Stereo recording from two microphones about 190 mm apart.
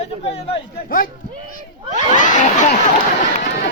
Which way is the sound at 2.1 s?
40° left (ahead or behind).